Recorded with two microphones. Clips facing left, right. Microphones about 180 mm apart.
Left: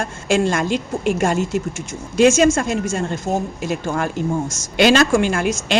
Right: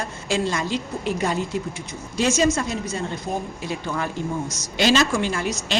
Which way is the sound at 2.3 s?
50° left (ahead or behind).